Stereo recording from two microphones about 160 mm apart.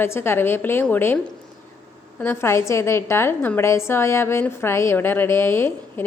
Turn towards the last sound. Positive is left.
turn(degrees=15)  # may be behind; listen again after turning